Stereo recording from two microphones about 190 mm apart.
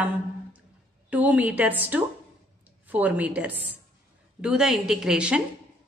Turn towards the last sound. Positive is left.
turn(degrees=-5)  # may be behind; listen again after turning